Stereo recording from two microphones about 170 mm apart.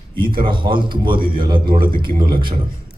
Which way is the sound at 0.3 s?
30° right (ahead or behind).